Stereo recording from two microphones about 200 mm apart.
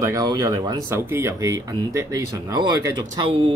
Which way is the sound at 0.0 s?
15° right (ahead or behind).